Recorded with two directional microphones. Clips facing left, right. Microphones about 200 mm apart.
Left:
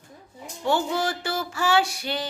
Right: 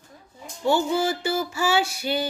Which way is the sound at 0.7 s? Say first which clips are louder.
Right 3 dB; centre (ahead or behind).